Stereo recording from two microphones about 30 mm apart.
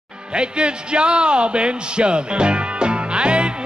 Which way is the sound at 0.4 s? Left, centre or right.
Right.